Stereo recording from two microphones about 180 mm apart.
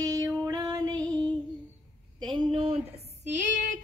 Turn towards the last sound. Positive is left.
turn(degrees=-40)  # may be behind; listen again after turning